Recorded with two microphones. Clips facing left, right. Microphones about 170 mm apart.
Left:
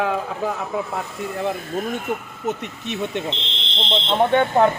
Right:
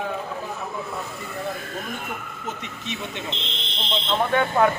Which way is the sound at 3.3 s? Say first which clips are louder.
Left 3 dB; 25° left (ahead or behind).